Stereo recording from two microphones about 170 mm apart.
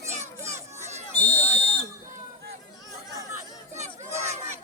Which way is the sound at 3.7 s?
40° right (ahead or behind).